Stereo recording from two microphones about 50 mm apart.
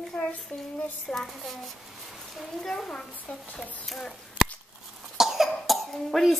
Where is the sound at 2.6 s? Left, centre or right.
Centre.